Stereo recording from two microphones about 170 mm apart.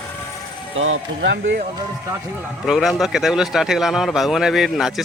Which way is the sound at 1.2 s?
90° right.